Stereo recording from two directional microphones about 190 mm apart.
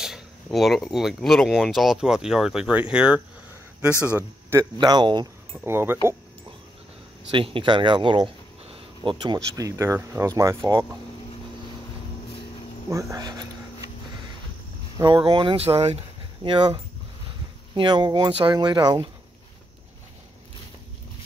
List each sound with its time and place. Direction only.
0.0 s speech: centre (ahead or behind)
4.7 s speech: 25° right (ahead or behind)
5.5 s speech: 10° right (ahead or behind)
7.2 s speech: 25° right (ahead or behind)
12.9 s speech: 15° right (ahead or behind)
15.0 s speech: 25° right (ahead or behind)